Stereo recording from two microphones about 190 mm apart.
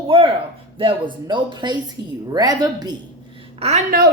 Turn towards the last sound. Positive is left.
turn(degrees=-35)  # may be behind; listen again after turning